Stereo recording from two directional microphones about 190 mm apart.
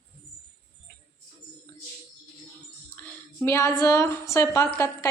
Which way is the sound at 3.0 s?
5° left (ahead or behind).